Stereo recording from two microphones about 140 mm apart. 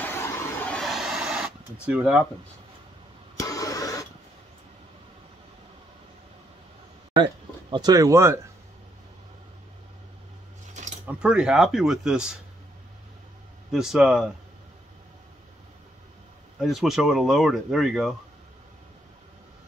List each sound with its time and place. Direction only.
0.0 s a sound: 15° left (ahead or behind); by 2.2 s 5° right (ahead or behind)
3.3 s vehicle: 25° left (ahead or behind)
7.7 s speech: 30° right (ahead or behind)
11.1 s speech: 5° right (ahead or behind)
13.7 s speech: 5° right (ahead or behind)
16.5 s speech: centre (ahead or behind)